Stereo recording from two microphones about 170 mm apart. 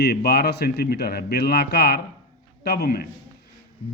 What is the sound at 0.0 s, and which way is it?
A man's voice, 70° left (ahead or behind).